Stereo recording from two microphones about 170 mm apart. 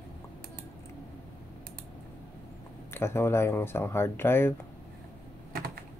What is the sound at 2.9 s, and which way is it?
Speech, 15° left (ahead or behind).